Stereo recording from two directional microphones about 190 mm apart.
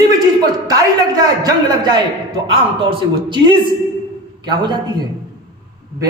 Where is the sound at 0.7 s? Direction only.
20° right (ahead or behind).